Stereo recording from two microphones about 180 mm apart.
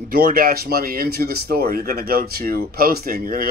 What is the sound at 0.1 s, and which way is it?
Speech, 55° right (ahead or behind).